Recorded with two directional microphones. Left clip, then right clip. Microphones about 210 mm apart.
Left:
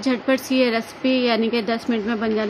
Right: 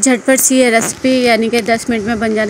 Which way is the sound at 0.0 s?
25° right (ahead or behind).